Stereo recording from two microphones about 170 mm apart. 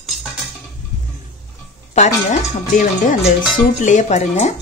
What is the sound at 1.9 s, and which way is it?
Speech, 45° left (ahead or behind).